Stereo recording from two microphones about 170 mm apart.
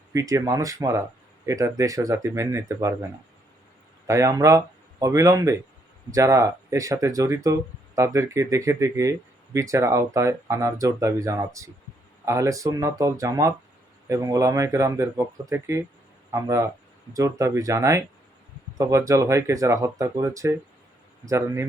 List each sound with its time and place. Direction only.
0.1 s speech: 20° right (ahead or behind)